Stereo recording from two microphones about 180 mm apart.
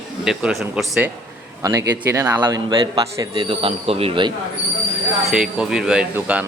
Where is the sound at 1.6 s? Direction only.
15° right (ahead or behind).